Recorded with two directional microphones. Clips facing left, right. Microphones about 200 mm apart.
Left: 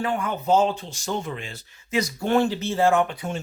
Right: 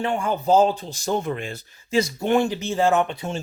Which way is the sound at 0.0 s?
30° right (ahead or behind).